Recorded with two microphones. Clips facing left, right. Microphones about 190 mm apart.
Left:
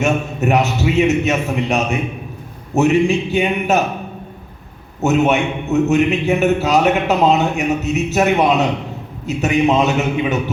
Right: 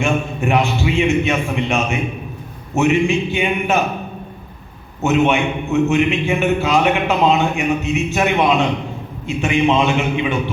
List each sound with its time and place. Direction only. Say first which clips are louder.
0.0 s a man's voice: left 2 dB; 40° left (ahead or behind)
5.0 s a man's voice: left 1 dB; 40° left (ahead or behind)